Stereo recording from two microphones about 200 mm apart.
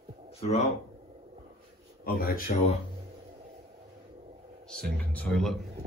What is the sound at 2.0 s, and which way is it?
Speech, 45° left (ahead or behind).